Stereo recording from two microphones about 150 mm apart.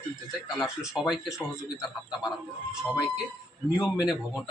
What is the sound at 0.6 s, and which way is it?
Speech, centre (ahead or behind).